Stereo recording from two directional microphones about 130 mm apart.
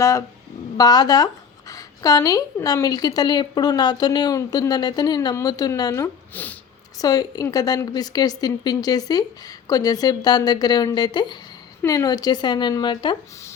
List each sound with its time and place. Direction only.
0.0 s speech: 25° left (ahead or behind)
6.3 s speech: 15° left (ahead or behind)
7.0 s speech: 30° left (ahead or behind)